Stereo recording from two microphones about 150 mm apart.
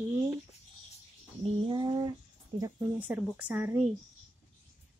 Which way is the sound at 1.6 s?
30° right (ahead or behind).